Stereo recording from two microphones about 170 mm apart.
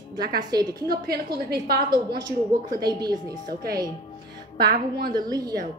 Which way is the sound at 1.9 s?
25° right (ahead or behind).